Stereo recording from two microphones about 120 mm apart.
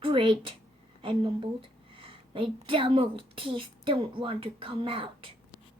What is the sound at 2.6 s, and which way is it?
A woman's voice, 45° right (ahead or behind).